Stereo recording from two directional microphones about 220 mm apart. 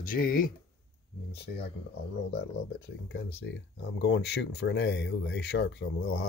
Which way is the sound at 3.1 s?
60° left (ahead or behind).